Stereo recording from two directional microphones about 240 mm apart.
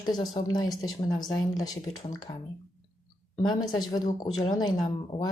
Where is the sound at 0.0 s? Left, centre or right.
Centre.